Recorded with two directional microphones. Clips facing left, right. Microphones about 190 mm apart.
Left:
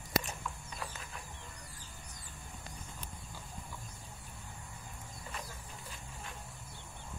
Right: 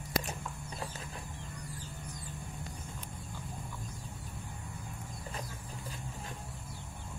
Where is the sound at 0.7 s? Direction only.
35° right (ahead or behind).